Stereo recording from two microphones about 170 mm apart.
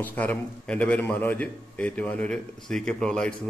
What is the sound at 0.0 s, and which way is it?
Speech, 10° left (ahead or behind).